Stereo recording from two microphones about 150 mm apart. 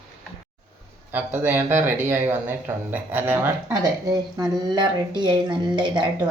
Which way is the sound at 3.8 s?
25° right (ahead or behind).